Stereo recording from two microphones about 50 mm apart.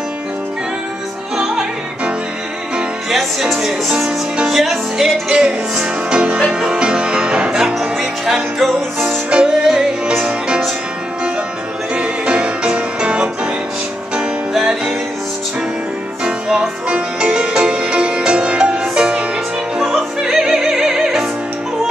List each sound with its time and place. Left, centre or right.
1.3 s music: centre
5.3 s music: centre
8.5 s music: centre
9.3 s music: centre
11.9 s music: right
14.5 s music: centre
16.3 s music: right
19.8 s opera: centre